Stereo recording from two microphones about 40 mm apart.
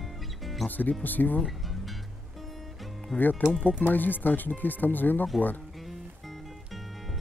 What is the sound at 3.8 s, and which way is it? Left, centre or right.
Speech, left.